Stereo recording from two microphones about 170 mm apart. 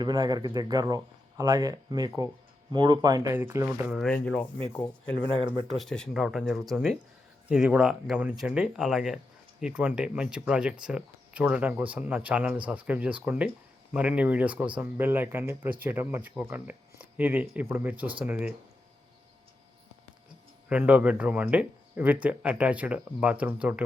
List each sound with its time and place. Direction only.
0.0 s speech: 25° right (ahead or behind); by 4.0 s 5° right (ahead or behind)
4.0 s speech: 5° left (ahead or behind)
5.7 s speech: 5° left (ahead or behind)
20.7 s speech: 10° right (ahead or behind)